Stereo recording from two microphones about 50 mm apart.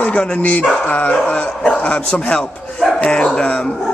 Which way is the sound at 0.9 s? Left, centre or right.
Left.